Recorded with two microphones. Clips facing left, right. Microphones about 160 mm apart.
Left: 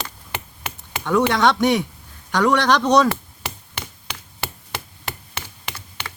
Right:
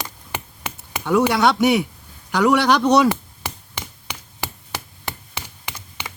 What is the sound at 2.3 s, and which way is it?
Chop, 10° right (ahead or behind).